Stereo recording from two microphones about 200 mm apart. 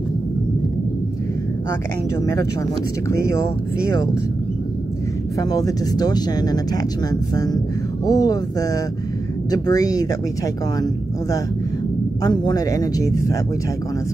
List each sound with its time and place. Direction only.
3.1 s speech: 15° left (ahead or behind)
5.4 s speech: 20° left (ahead or behind)